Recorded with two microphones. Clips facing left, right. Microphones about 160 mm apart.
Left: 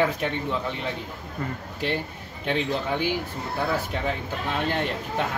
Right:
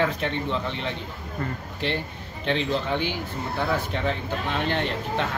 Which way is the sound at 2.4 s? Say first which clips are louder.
Right 1 dB; 10° left (ahead or behind).